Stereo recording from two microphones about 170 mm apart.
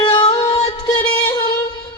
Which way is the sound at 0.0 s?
30° left (ahead or behind).